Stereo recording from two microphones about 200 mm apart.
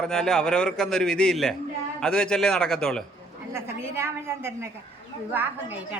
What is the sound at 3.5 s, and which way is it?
A woman's voice, 15° right (ahead or behind).